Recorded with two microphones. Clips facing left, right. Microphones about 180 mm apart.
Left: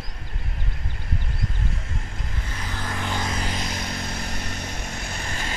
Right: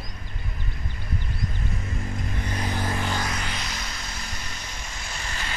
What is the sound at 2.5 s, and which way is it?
Vehicle, 10° right (ahead or behind).